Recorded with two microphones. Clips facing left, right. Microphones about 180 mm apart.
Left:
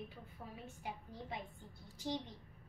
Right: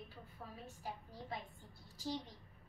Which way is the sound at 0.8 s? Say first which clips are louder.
Left 1 dB; 20° left (ahead or behind).